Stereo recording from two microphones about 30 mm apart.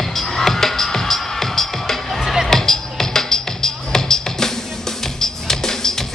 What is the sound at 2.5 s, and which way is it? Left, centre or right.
Music, centre.